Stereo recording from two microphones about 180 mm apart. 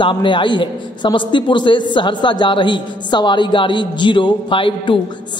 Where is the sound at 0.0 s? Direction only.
25° left (ahead or behind).